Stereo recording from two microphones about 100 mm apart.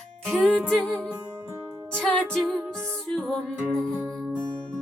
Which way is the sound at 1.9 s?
10° left (ahead or behind).